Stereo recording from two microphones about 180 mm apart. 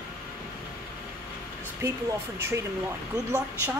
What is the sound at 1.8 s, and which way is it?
Speech, 15° right (ahead or behind).